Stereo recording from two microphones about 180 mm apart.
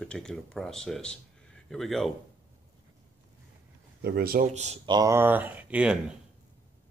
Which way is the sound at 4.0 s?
60° right (ahead or behind).